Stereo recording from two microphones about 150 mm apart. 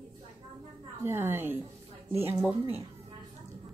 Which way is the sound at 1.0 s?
15° right (ahead or behind).